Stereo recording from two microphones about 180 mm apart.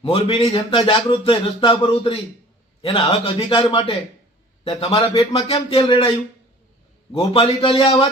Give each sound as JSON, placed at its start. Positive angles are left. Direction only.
{"t": 0.0, "sound": "a man's voice", "side_deg": 30}
{"t": 7.1, "sound": "a man's voice", "side_deg": 30}